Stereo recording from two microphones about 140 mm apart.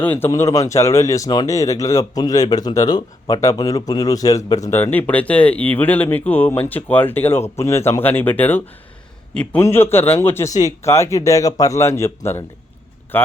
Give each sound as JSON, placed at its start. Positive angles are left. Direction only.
{"t": 0.0, "sound": "a man's voice", "side_deg": 15}